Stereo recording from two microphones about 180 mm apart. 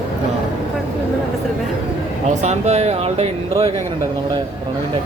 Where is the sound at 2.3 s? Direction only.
40° right (ahead or behind).